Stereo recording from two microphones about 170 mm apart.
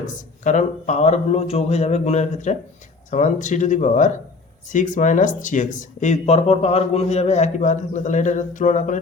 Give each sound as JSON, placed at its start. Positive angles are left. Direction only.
{"t": 0.0, "sound": "speech", "side_deg": 45}